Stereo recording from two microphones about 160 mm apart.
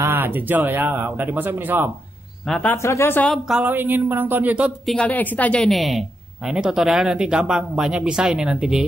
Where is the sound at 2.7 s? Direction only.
15° left (ahead or behind).